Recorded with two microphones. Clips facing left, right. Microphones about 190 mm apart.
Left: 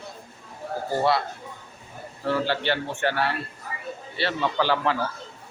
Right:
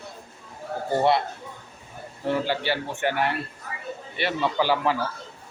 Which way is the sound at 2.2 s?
15° right (ahead or behind).